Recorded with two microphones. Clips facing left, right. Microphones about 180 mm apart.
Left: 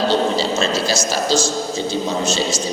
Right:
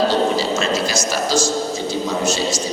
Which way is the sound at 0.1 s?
30° left (ahead or behind).